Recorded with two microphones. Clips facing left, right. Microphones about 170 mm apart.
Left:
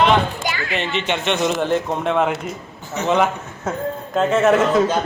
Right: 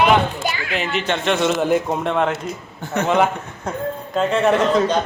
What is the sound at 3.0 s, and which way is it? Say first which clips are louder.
Speech: right 2 dB; 60° right (ahead or behind).